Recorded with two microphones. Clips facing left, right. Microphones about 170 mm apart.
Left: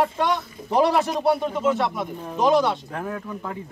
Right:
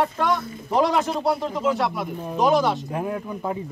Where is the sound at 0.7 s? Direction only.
5° left (ahead or behind).